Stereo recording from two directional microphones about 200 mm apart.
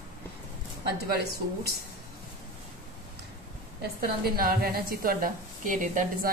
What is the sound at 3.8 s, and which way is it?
A woman's voice, 45° right (ahead or behind).